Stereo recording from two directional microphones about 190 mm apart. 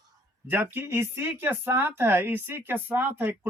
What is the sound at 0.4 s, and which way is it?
Speech, 10° right (ahead or behind).